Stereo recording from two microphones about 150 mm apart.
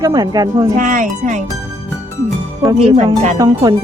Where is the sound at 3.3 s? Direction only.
20° right (ahead or behind).